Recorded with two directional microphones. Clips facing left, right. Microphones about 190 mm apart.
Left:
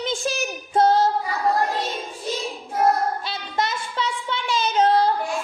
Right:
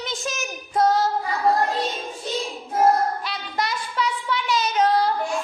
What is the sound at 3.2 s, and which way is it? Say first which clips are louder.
Child singing: left 1 dB; 25° left (ahead or behind).